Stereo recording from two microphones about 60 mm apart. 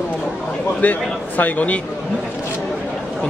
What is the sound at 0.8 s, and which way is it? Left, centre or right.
A man's voice, left.